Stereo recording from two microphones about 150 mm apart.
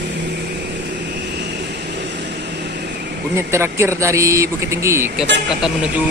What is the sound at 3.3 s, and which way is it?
Speech, 20° right (ahead or behind).